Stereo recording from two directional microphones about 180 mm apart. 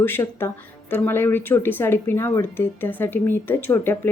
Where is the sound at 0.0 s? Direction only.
10° left (ahead or behind).